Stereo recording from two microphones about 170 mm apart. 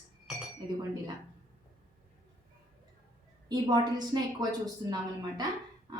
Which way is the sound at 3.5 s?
25° right (ahead or behind).